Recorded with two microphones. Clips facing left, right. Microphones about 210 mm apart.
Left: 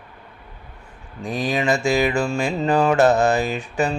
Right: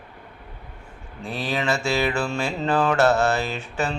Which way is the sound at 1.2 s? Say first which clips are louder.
Left 4 dB; 15° left (ahead or behind).